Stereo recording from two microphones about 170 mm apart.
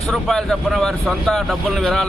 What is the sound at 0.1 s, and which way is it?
A man's voice, centre (ahead or behind).